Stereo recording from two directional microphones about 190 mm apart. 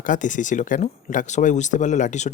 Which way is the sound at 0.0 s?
45° left (ahead or behind).